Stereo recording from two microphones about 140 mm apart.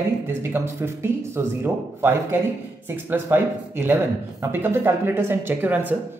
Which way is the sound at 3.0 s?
15° right (ahead or behind).